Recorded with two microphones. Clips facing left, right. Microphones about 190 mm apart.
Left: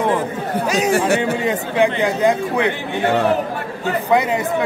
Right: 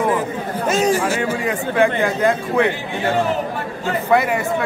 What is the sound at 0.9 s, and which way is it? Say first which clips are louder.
Speech: left 3 dB; 65° left (ahead or behind).